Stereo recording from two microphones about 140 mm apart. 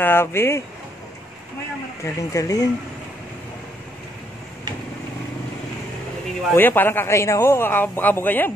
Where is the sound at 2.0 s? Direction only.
20° left (ahead or behind).